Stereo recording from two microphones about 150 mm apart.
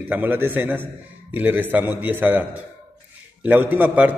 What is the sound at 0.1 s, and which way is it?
A man's voice, 15° right (ahead or behind).